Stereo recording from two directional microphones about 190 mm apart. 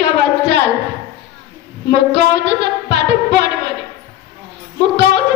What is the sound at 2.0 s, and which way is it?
Music, 65° right (ahead or behind).